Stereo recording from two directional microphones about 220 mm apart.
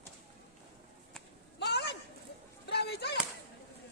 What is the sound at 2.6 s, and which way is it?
Chop, 50° left (ahead or behind).